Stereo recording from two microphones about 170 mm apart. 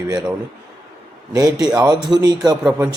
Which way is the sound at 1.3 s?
20° right (ahead or behind).